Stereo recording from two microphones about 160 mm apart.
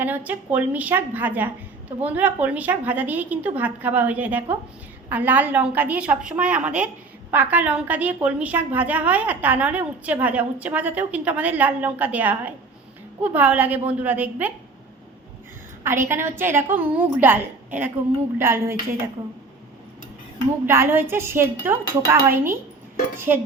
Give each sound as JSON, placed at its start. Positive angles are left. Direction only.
{"t": 0.0, "sound": "a woman's voice", "side_deg": -10}
{"t": 15.8, "sound": "a woman's voice", "side_deg": -15}
{"t": 20.7, "sound": "a woman's voice", "side_deg": -15}
{"t": 23.3, "sound": "a woman's voice", "side_deg": -10}